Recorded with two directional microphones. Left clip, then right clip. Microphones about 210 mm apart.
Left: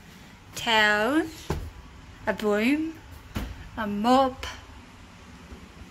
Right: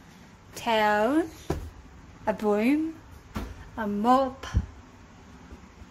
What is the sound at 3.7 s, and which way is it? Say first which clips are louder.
Speech: left 1 dB; 15° right (ahead or behind).